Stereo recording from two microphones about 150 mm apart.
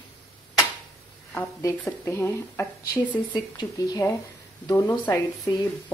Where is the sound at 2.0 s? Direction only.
15° left (ahead or behind).